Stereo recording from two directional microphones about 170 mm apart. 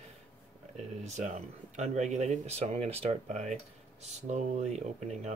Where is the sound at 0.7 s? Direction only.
45° right (ahead or behind).